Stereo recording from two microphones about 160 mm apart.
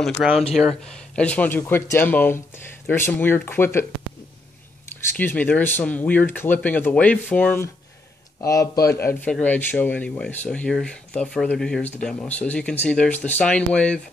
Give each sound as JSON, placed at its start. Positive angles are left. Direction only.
{"t": 0.6, "sound": "speech", "side_deg": 5}
{"t": 5.1, "sound": "speech", "side_deg": 10}